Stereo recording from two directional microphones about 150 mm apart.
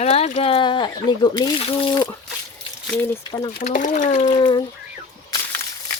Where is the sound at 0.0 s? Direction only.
45° left (ahead or behind); by 1.5 s 30° left (ahead or behind).